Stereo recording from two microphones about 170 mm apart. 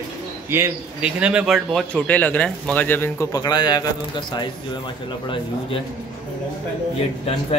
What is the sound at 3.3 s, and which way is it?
Speech, 25° left (ahead or behind).